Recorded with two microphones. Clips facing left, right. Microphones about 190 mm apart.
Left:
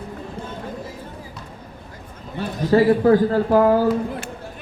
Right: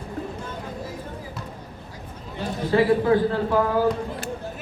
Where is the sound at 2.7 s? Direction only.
40° left (ahead or behind).